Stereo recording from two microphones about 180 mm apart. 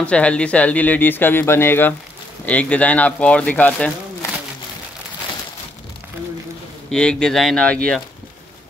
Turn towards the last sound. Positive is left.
turn(degrees=5)  # may be behind; listen again after turning